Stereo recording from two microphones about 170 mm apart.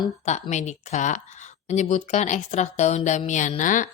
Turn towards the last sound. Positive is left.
turn(degrees=50)  # may be behind; listen again after turning